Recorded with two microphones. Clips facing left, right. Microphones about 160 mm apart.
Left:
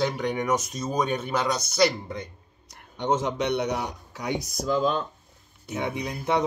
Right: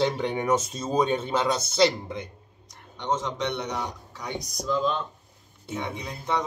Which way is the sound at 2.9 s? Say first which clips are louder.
Left 3 dB; 10° left (ahead or behind).